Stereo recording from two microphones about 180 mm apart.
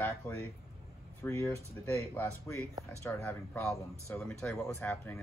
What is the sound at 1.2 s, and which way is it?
Speech, 15° left (ahead or behind).